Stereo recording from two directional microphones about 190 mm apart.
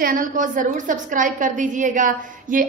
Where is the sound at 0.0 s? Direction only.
45° right (ahead or behind).